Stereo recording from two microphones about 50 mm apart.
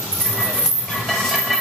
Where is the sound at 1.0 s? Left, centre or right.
Centre.